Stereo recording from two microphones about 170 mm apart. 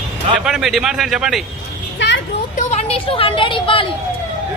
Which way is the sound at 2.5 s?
40° left (ahead or behind).